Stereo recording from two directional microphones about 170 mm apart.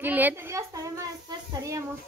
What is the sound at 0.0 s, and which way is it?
A woman's voice, 10° right (ahead or behind).